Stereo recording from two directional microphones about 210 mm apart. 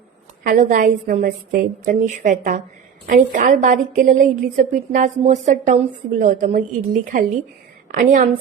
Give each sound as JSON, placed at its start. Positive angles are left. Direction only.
{"t": 0.4, "sound": "a woman's voice", "side_deg": -35}